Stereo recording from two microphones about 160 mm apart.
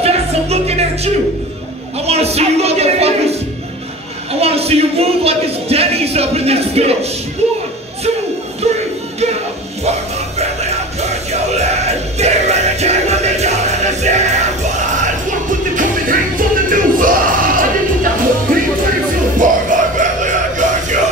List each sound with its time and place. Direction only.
0.0 s music: 40° right (ahead or behind)
4.3 s a sound: 40° right (ahead or behind)
8.6 s music: 40° right (ahead or behind)
11.5 s music: 45° right (ahead or behind)
15.7 s music: 60° right (ahead or behind)